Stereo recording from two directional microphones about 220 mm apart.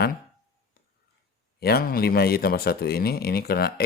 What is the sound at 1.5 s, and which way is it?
A man's voice, 45° left (ahead or behind).